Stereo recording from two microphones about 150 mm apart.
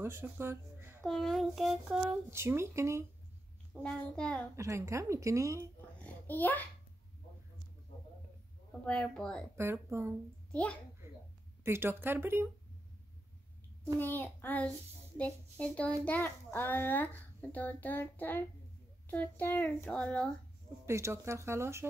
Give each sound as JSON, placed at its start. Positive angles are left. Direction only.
{"t": 0.0, "sound": "speech", "side_deg": -15}
{"t": 1.0, "sound": "child singing", "side_deg": 5}
{"t": 2.3, "sound": "a woman's voice", "side_deg": -20}
{"t": 3.8, "sound": "a child's voice", "side_deg": 5}
{"t": 4.6, "sound": "a woman's voice", "side_deg": -20}
{"t": 6.2, "sound": "a child's voice", "side_deg": 10}
{"t": 8.8, "sound": "child singing", "side_deg": 5}
{"t": 9.6, "sound": "speech", "side_deg": -15}
{"t": 11.0, "sound": "a sound", "side_deg": -15}
{"t": 11.6, "sound": "speech", "side_deg": -15}
{"t": 13.9, "sound": "a child's voice", "side_deg": 15}
{"t": 20.8, "sound": "speech", "side_deg": -15}